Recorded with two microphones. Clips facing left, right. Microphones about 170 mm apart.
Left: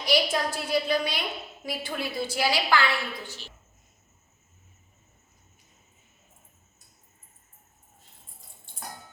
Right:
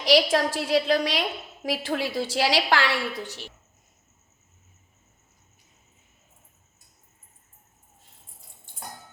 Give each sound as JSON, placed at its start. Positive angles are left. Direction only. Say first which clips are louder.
{"t": 0.0, "sound": "a woman's voice", "louder": "right 5 dB", "side_deg": -90}